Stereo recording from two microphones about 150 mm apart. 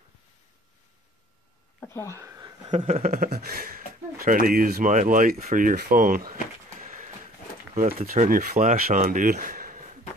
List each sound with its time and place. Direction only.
1.8 s speech: 15° left (ahead or behind)
2.0 s a sound: 20° right (ahead or behind)
3.0 s speech: 70° right (ahead or behind)
3.3 s speech: 85° right; by 6.3 s 70° right (ahead or behind)
6.8 s a sound: 55° right (ahead or behind)
7.7 s speech: 50° right (ahead or behind)